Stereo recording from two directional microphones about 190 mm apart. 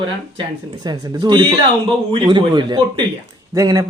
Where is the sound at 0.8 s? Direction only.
20° right (ahead or behind).